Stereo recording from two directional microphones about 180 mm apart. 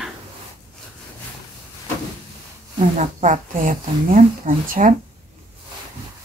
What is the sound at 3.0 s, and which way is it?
Speech, 45° right (ahead or behind).